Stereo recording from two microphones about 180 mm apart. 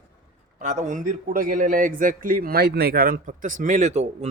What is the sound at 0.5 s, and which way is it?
A man's voice, 40° right (ahead or behind).